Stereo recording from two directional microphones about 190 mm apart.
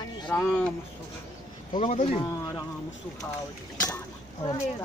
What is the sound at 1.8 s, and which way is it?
Speech, 30° left (ahead or behind).